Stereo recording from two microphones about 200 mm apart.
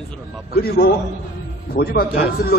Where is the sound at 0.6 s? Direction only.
50° left (ahead or behind).